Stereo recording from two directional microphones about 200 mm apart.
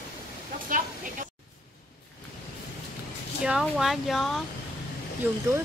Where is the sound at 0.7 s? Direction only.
40° right (ahead or behind).